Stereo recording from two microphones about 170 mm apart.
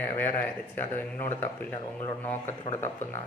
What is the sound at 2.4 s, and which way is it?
Speech, 40° left (ahead or behind).